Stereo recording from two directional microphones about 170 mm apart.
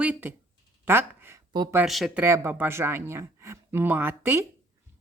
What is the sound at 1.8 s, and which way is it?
Speech, centre (ahead or behind).